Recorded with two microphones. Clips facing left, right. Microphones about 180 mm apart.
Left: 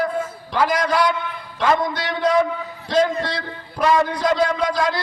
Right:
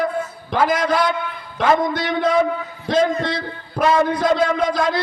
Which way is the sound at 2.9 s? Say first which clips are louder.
Even; 55° right (ahead or behind).